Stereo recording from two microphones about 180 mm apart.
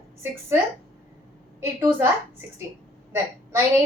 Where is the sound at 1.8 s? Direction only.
15° right (ahead or behind).